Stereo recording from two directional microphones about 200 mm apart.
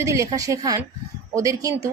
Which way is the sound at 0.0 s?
15° right (ahead or behind).